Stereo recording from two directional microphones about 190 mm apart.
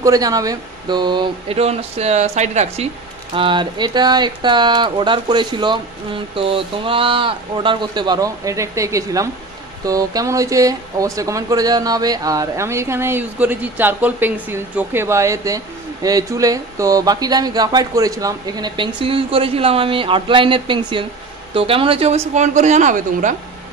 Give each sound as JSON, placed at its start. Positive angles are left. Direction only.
{"t": 0.0, "sound": "speech", "side_deg": -20}
{"t": 3.3, "sound": "speech", "side_deg": -25}